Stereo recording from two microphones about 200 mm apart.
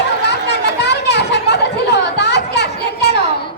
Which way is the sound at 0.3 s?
55° left (ahead or behind).